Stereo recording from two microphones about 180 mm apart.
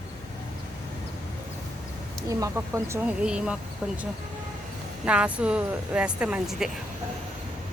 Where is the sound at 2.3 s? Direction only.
15° right (ahead or behind); by 4.0 s centre (ahead or behind).